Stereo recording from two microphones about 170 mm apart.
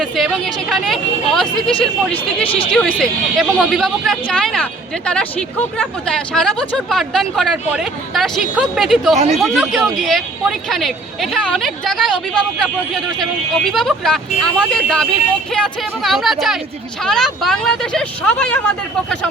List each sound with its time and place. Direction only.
0.0 s speech: centre (ahead or behind)
9.1 s speech: 40° right (ahead or behind)
9.4 s speech: centre (ahead or behind)
13.7 s speech: centre (ahead or behind)